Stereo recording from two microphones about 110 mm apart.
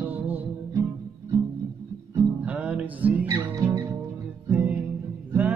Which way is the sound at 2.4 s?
15° right (ahead or behind).